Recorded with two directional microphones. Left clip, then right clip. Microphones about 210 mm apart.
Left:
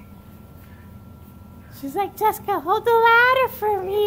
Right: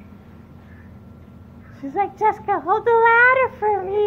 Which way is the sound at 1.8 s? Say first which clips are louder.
Right 2 dB; 15° left (ahead or behind).